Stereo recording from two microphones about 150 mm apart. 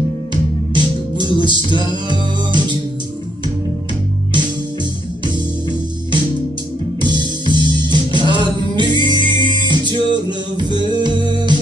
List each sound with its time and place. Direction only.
0.3 s music: 30° right (ahead or behind)
7.0 s music: 30° right (ahead or behind)